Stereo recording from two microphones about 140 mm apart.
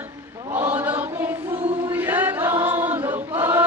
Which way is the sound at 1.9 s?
15° right (ahead or behind).